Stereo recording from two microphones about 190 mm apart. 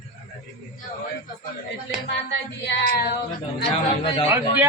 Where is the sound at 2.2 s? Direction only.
60° left (ahead or behind).